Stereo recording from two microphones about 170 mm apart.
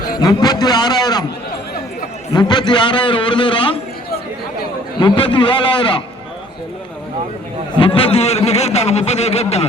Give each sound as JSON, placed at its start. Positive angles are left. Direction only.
{"t": 0.2, "sound": "a man's voice", "side_deg": 25}
{"t": 2.3, "sound": "a man's voice", "side_deg": 25}
{"t": 4.9, "sound": "a man's voice", "side_deg": 30}
{"t": 7.8, "sound": "a man's voice", "side_deg": 30}